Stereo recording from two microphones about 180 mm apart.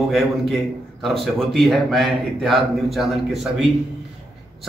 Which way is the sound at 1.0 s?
Centre (ahead or behind).